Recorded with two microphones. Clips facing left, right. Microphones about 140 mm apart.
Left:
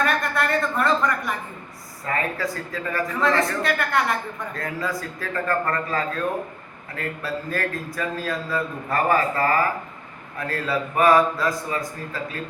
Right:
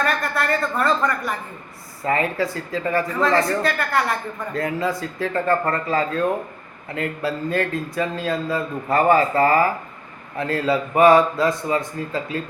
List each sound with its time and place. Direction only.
0.0 s speech: centre (ahead or behind)
2.0 s speech: 25° right (ahead or behind)
3.6 s speech: centre (ahead or behind)
4.5 s speech: 25° right (ahead or behind)